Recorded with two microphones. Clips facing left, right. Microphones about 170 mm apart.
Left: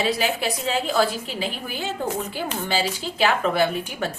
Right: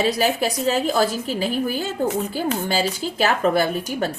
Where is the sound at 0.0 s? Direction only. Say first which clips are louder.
Right 3 dB; 40° right (ahead or behind).